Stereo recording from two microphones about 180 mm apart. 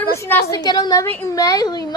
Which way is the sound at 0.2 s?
10° left (ahead or behind).